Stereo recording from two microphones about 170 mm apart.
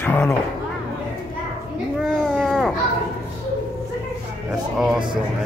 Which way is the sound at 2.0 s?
5° right (ahead or behind).